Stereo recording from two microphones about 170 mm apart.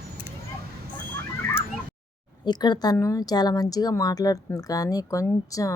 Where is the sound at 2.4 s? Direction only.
25° left (ahead or behind).